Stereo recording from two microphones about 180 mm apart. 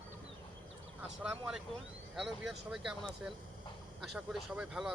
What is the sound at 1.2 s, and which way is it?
Speech, 5° right (ahead or behind).